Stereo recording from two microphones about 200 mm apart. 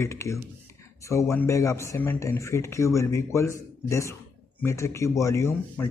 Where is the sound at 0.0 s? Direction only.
15° left (ahead or behind).